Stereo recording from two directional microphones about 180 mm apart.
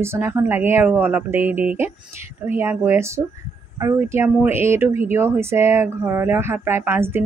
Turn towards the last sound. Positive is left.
turn(degrees=-10)  # may be behind; listen again after turning